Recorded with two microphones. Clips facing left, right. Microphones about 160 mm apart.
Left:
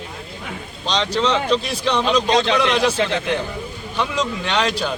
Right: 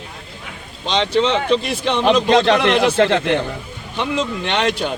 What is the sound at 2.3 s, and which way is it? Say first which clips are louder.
A man's voice: right 4 dB; 60° right (ahead or behind).